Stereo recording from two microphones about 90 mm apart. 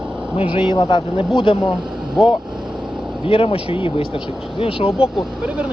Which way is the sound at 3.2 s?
85° left.